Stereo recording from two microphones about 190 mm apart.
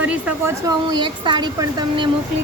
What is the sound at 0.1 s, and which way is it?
Speech, 10° right (ahead or behind).